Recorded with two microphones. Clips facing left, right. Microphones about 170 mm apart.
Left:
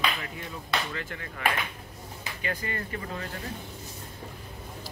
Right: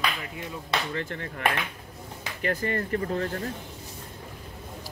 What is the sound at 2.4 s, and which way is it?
Speech, 45° right (ahead or behind).